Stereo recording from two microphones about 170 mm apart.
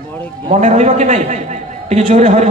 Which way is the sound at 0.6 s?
40° right (ahead or behind).